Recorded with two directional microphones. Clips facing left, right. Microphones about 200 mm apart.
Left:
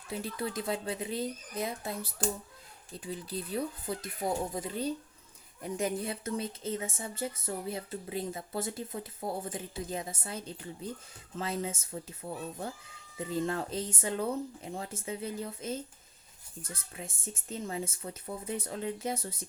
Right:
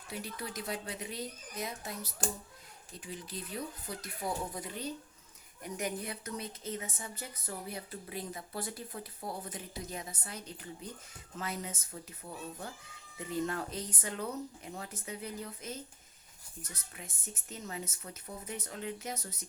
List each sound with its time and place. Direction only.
0.1 s speech: 25° left (ahead or behind)
13.1 s speech: 25° left (ahead or behind)